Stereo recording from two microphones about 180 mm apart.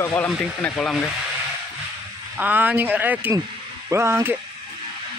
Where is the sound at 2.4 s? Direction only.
10° right (ahead or behind).